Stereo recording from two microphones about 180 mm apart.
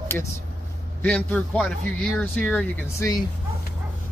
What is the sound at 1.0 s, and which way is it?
A man's voice, 10° left (ahead or behind).